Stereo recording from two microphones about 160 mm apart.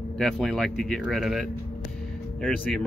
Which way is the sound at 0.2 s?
Centre (ahead or behind).